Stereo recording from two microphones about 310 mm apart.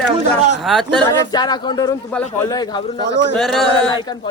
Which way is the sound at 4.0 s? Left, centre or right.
Centre.